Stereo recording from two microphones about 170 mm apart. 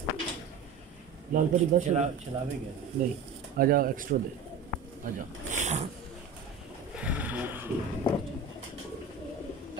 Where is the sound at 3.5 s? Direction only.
60° right (ahead or behind).